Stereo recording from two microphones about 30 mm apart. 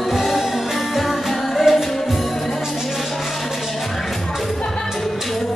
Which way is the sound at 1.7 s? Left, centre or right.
Centre.